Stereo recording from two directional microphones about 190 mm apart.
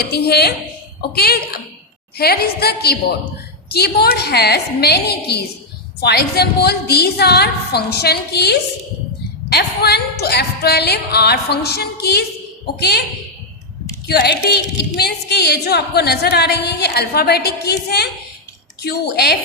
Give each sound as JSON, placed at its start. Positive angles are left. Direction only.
{"t": 0.0, "sound": "a woman's voice", "side_deg": 55}
{"t": 14.1, "sound": "a woman's voice", "side_deg": 55}